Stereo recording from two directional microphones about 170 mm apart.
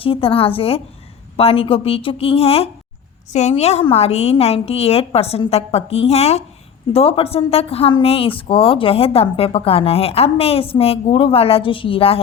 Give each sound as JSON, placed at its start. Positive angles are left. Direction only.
{"t": 0.0, "sound": "a woman's voice", "side_deg": 30}